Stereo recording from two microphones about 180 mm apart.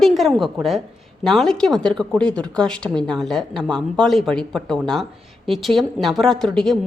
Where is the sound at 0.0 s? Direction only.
Centre (ahead or behind).